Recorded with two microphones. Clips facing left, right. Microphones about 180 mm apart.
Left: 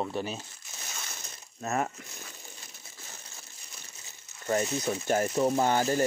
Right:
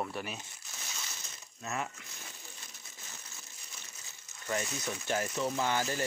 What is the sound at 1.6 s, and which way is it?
Speech, 45° left (ahead or behind).